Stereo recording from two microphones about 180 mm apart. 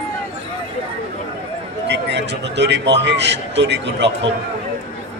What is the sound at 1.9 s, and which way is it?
A man's voice, 75° right (ahead or behind).